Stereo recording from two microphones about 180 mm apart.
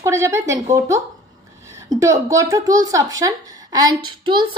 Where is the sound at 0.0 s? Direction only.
15° right (ahead or behind).